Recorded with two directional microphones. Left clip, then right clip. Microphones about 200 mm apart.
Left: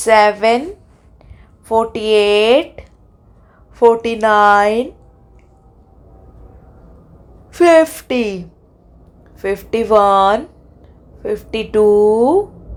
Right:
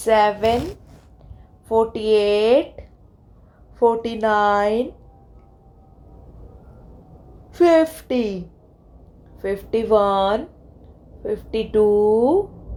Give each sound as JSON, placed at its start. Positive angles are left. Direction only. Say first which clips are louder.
{"t": 0.0, "sound": "speech", "louder": "left 6 dB", "side_deg": 25}
{"t": 1.6, "sound": "speech", "louder": "left 4 dB", "side_deg": 25}
{"t": 7.5, "sound": "speech", "louder": "left 6 dB", "side_deg": 25}